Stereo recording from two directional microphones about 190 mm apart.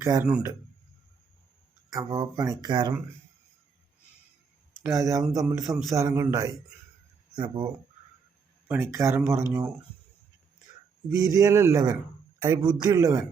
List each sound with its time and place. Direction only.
0.0 s speech: 10° right (ahead or behind)
1.9 s speech: 20° right (ahead or behind)
4.8 s speech: 15° right (ahead or behind)
8.6 s speech: 10° right (ahead or behind)
11.1 s speech: 15° right (ahead or behind)